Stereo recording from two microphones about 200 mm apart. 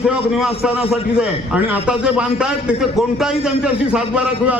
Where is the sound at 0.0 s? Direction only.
5° right (ahead or behind).